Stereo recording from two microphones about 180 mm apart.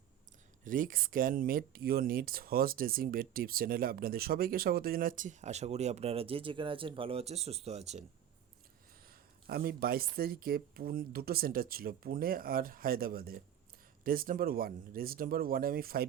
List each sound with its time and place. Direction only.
0.6 s speech: 50° right (ahead or behind)
9.5 s speech: 55° right (ahead or behind)